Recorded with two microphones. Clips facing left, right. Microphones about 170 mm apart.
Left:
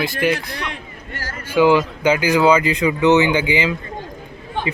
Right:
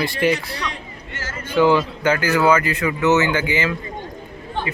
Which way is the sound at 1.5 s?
10° left (ahead or behind).